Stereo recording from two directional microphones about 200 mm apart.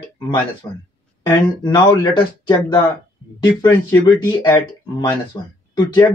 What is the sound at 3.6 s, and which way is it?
Speech, 10° left (ahead or behind).